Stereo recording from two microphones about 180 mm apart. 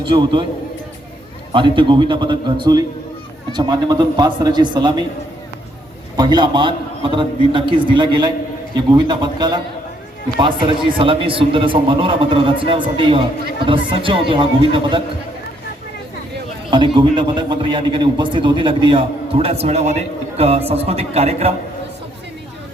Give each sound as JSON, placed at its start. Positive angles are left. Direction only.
{"t": 0.0, "sound": "a man's voice", "side_deg": -25}
{"t": 1.5, "sound": "a man's voice", "side_deg": -25}
{"t": 6.1, "sound": "a man's voice", "side_deg": -25}
{"t": 16.6, "sound": "a man's voice", "side_deg": -25}